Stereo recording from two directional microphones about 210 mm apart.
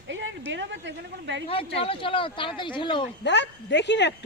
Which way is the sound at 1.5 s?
25° left (ahead or behind).